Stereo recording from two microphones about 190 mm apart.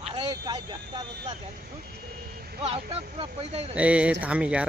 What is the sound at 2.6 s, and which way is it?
Speech, 30° right (ahead or behind).